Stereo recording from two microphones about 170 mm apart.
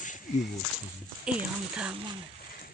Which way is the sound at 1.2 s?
5° right (ahead or behind).